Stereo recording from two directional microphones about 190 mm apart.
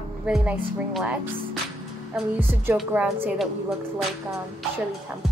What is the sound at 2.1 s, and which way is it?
A woman's voice, 5° right (ahead or behind).